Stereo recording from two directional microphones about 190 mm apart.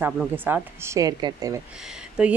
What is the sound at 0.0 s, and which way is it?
Speech, 10° right (ahead or behind).